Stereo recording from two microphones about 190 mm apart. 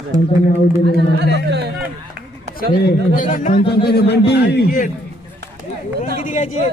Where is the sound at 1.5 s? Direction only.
60° right (ahead or behind).